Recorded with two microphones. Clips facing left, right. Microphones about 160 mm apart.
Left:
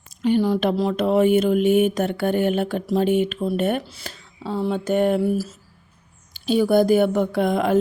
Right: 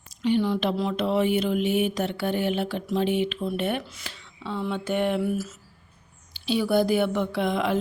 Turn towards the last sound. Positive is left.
turn(degrees=45)  # may be behind; listen again after turning